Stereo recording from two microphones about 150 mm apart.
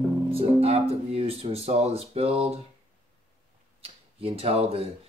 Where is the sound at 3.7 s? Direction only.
40° right (ahead or behind).